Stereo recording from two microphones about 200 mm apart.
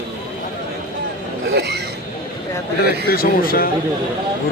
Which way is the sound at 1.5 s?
55° right (ahead or behind).